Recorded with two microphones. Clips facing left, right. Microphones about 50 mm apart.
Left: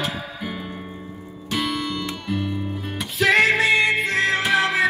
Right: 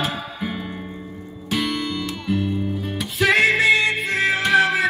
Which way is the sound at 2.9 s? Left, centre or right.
Centre.